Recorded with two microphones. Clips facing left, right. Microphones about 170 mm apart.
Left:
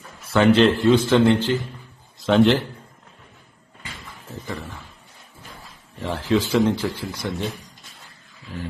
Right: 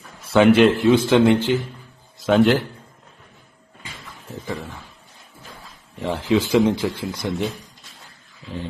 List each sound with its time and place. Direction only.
0.3 s speech: 15° right (ahead or behind)
2.2 s a man's voice: centre (ahead or behind)
4.4 s speech: 15° right (ahead or behind)
6.0 s speech: 15° right (ahead or behind)